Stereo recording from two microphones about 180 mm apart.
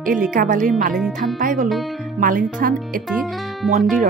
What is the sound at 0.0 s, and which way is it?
Speech, 50° right (ahead or behind).